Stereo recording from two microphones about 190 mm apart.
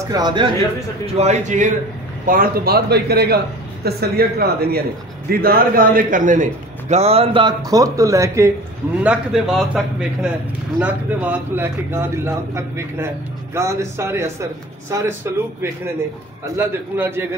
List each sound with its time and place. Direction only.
0.0 s speech: 20° right (ahead or behind)
1.0 s a man's voice: 35° right (ahead or behind); by 8.5 s 15° right (ahead or behind)
9.0 s a man's voice: 5° right (ahead or behind)
16.5 s a man's voice: 10° right (ahead or behind)